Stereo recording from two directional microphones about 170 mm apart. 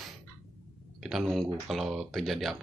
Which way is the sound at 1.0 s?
Centre (ahead or behind).